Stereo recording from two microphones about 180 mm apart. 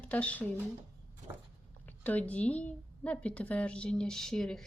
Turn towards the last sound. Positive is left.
turn(degrees=0)  # may be behind; listen again after turning